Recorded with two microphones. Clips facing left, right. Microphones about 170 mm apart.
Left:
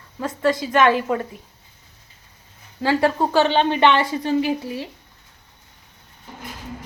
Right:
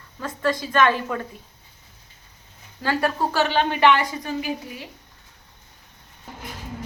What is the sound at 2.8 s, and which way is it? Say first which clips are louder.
A woman's voice: left 4 dB; 20° left (ahead or behind).